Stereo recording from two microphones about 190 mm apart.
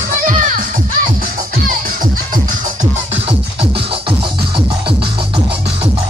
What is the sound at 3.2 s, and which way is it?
Music, 30° right (ahead or behind).